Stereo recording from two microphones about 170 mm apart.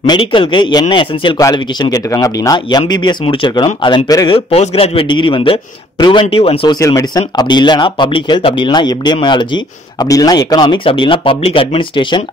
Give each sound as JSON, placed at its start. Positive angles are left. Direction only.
{"t": 0.0, "sound": "speech", "side_deg": 30}
{"t": 4.5, "sound": "a man's voice", "side_deg": 35}
{"t": 6.8, "sound": "speech", "side_deg": 20}